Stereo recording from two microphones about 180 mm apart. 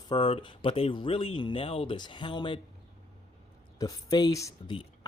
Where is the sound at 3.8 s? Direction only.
20° left (ahead or behind).